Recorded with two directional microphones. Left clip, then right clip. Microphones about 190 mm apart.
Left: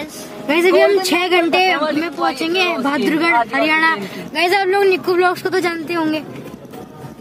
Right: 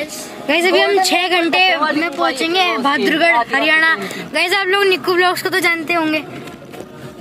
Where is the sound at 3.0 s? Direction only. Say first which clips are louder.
Even; 50° right (ahead or behind).